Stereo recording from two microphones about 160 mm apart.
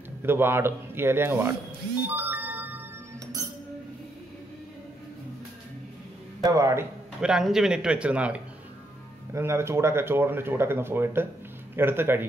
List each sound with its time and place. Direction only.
0.2 s speech: 15° right (ahead or behind)
2.0 s music: 10° right (ahead or behind)
6.4 s speech: 20° right (ahead or behind)
7.2 s a man's voice: 5° right (ahead or behind)